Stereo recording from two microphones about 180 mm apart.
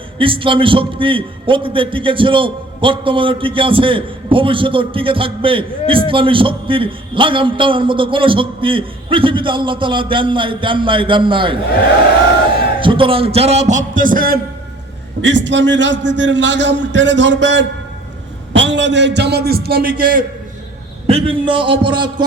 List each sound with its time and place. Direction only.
0.2 s a man's voice: 30° right (ahead or behind)
12.8 s a man's voice: 30° right (ahead or behind); by 14.3 s 50° right (ahead or behind)
15.2 s a man's voice: 85° right; by 20.2 s 50° right (ahead or behind)
21.1 s a man's voice: 30° right (ahead or behind)